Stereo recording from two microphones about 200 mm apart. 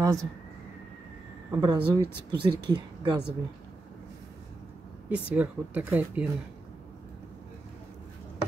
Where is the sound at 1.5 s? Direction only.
20° right (ahead or behind).